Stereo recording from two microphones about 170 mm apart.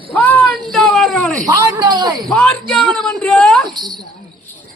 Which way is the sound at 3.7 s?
25° right (ahead or behind).